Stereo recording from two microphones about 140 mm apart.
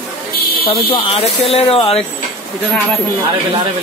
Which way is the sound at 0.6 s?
40° left (ahead or behind).